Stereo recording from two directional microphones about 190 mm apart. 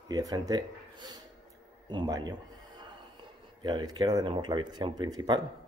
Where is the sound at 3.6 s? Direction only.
25° right (ahead or behind).